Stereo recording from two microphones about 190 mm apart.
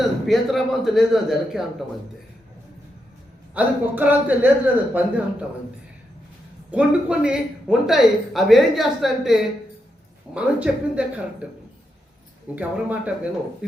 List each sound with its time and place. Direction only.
0.3 s speech: centre (ahead or behind)
3.5 s a man's voice: 10° right (ahead or behind)
6.7 s a man's voice: 5° right (ahead or behind)
12.5 s a man's voice: 10° right (ahead or behind)